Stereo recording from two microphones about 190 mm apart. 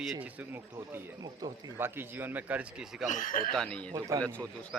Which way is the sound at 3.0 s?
40° left (ahead or behind).